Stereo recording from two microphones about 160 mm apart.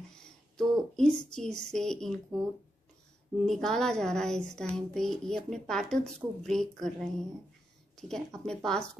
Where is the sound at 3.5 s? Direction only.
5° left (ahead or behind).